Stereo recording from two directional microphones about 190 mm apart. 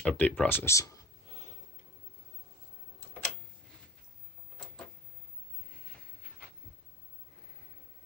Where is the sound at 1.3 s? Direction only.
35° left (ahead or behind).